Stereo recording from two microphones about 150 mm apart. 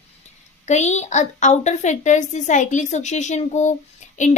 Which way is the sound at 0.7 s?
50° left (ahead or behind).